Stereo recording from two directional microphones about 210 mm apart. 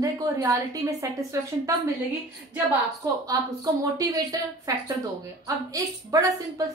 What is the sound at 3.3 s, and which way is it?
A woman's voice, 15° right (ahead or behind).